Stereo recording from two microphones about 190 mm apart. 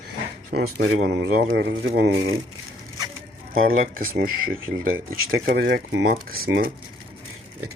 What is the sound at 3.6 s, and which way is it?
Speech, 50° right (ahead or behind).